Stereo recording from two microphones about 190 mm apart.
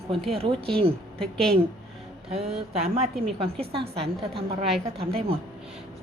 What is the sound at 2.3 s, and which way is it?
A woman's voice, 35° right (ahead or behind).